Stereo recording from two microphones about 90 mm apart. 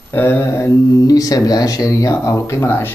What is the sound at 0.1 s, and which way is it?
Speech, 25° left (ahead or behind).